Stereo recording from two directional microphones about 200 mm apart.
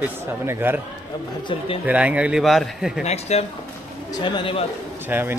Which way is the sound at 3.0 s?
35° left (ahead or behind).